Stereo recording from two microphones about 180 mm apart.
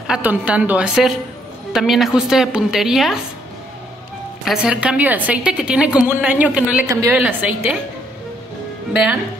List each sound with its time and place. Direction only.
0.0 s a woman's voice: 5° right (ahead or behind)
4.5 s a woman's voice: 5° right (ahead or behind)
6.9 s a woman's voice: 20° right (ahead or behind)
7.2 s a woman's voice: 10° right (ahead or behind)